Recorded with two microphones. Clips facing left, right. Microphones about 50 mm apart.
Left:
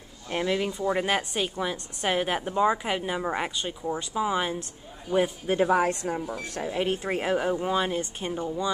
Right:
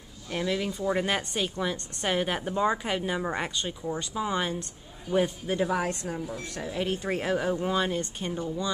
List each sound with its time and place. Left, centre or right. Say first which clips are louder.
0.3 s speech: left 3 dB; centre
0.7 s a woman's voice: left 1 dB; centre
5.1 s a man's voice: left 1 dB; centre
5.5 s a woman's voice: left 5 dB; left